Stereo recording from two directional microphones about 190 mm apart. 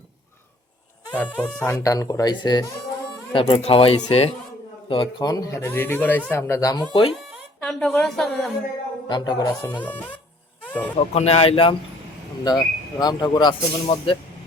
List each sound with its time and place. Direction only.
1.1 s speech: 10° left (ahead or behind)
6.9 s speech: 30° left (ahead or behind)
7.3 s speech: centre (ahead or behind)
9.0 s speech: 25° left (ahead or behind)
9.7 s speech: 10° left (ahead or behind)
11.1 s speech: 35° left (ahead or behind)